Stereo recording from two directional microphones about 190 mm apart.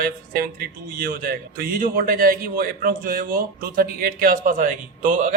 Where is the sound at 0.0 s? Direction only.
50° right (ahead or behind).